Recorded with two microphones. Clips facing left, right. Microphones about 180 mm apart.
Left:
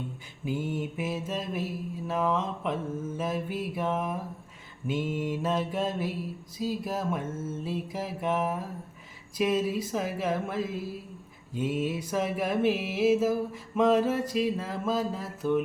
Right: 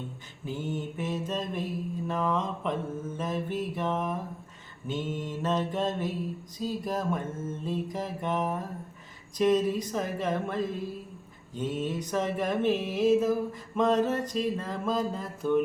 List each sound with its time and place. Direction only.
0.4 s music: 10° left (ahead or behind)
2.0 s mantra: 5° left (ahead or behind)
3.2 s music: 10° left (ahead or behind)
6.6 s mantra: 5° left (ahead or behind)
9.4 s music: 10° left (ahead or behind)